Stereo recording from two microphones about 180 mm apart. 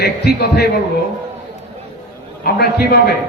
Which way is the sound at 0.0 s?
65° left (ahead or behind).